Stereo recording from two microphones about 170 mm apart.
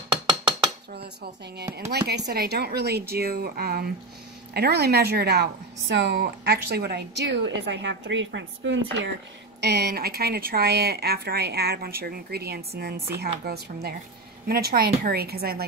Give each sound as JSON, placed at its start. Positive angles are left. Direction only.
{"t": 0.9, "sound": "dishes", "side_deg": -70}
{"t": 1.9, "sound": "a woman's voice", "side_deg": -75}
{"t": 9.6, "sound": "speech", "side_deg": -75}